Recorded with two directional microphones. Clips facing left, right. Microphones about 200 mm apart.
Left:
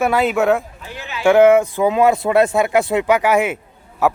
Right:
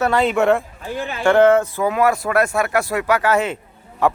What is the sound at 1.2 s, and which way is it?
A man's voice, 10° left (ahead or behind).